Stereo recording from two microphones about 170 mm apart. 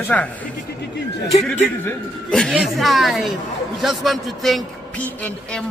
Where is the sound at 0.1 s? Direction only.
5° left (ahead or behind).